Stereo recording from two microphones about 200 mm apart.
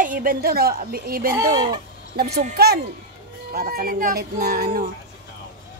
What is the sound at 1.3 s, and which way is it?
Speech, 20° right (ahead or behind).